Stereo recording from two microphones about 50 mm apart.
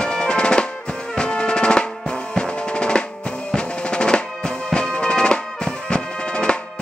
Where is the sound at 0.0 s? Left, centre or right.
Centre.